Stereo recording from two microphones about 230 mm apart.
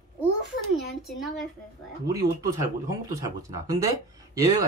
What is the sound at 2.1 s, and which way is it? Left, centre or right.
Speech, centre.